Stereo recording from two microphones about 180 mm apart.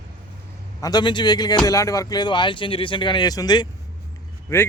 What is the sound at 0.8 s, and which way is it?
Speech, 25° left (ahead or behind).